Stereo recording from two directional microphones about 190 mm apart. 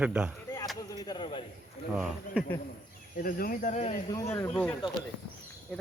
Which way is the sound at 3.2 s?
50° left (ahead or behind).